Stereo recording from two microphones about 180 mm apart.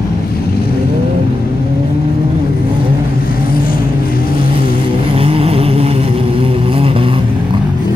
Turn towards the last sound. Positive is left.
turn(degrees=-30)  # may be behind; listen again after turning